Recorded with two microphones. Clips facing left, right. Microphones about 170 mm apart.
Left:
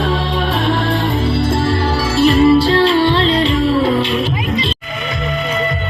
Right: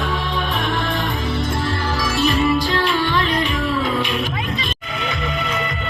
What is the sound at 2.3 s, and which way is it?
Music, 35° left (ahead or behind).